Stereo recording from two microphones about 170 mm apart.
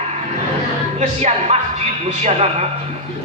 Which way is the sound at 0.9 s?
40° right (ahead or behind).